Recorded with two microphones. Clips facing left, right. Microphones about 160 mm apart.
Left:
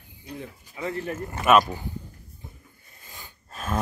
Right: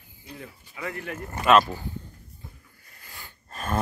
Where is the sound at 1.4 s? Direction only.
15° left (ahead or behind).